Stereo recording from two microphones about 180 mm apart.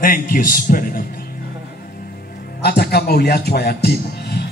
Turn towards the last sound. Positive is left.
turn(degrees=65)  # may be behind; listen again after turning